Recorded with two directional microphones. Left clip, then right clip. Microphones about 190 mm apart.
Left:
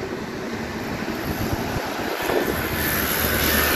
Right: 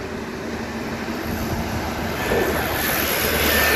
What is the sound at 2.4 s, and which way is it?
Vehicle, 65° left (ahead or behind).